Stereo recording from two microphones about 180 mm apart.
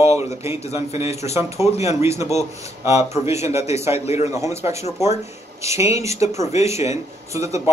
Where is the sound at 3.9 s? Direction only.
35° left (ahead or behind).